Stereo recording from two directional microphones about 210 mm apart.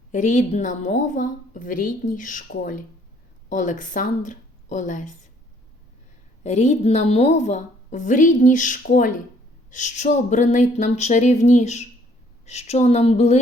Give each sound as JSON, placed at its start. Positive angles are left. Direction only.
{"t": 0.1, "sound": "a woman's voice", "side_deg": 35}
{"t": 6.4, "sound": "a woman's voice", "side_deg": 35}